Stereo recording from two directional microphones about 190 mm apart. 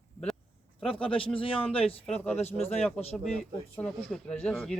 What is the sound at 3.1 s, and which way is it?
Speech, 5° left (ahead or behind).